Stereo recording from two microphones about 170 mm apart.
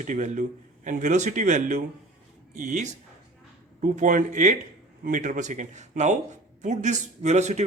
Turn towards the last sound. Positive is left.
turn(degrees=-45)  # may be behind; listen again after turning